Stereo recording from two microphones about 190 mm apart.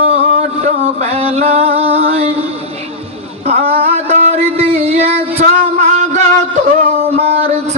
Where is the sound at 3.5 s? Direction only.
30° right (ahead or behind).